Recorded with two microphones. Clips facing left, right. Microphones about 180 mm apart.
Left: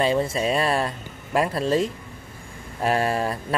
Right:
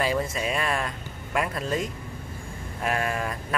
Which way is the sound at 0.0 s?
30° left (ahead or behind).